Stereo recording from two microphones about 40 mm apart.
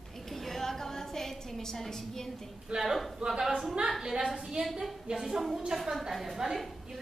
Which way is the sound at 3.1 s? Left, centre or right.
Centre.